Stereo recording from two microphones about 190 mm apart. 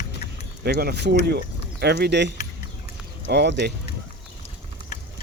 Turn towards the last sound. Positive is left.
turn(degrees=-60)  # may be behind; listen again after turning